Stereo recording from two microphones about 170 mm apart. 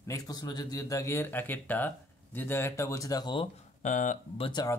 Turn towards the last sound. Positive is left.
turn(degrees=25)  # may be behind; listen again after turning